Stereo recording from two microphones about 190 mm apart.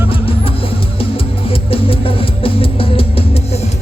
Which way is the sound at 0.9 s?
30° left (ahead or behind).